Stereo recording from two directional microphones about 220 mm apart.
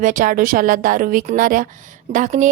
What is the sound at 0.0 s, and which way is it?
A woman's voice, 35° right (ahead or behind).